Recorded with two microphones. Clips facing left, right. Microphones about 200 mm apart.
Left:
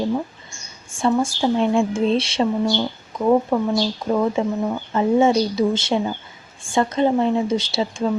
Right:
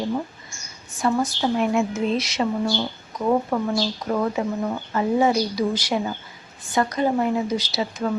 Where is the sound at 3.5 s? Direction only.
10° left (ahead or behind).